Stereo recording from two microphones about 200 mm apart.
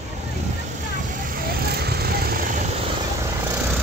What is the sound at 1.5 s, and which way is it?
Vehicle, 50° right (ahead or behind).